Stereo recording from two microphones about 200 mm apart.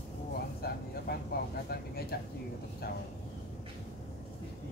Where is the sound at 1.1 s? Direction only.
50° left (ahead or behind).